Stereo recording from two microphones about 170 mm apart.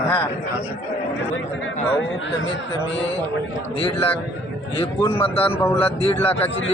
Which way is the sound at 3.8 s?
35° left (ahead or behind).